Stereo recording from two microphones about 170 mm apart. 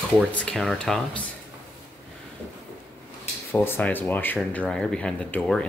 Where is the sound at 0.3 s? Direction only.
5° left (ahead or behind).